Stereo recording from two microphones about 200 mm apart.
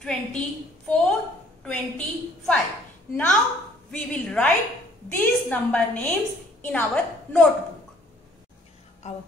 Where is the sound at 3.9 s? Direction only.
5° left (ahead or behind).